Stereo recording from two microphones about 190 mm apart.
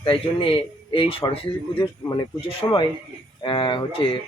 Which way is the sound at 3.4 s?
25° left (ahead or behind).